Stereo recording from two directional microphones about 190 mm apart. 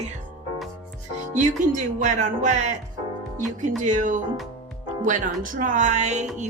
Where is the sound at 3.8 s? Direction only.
40° right (ahead or behind).